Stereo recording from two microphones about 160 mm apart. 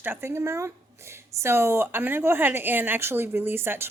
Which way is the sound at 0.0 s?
15° right (ahead or behind).